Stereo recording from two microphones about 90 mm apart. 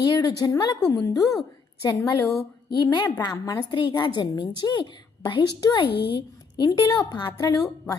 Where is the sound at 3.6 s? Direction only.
60° left (ahead or behind).